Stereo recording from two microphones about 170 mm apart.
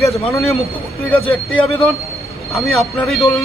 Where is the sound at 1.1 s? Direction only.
5° left (ahead or behind).